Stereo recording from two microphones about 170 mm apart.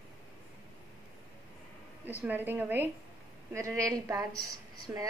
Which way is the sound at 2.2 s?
10° right (ahead or behind).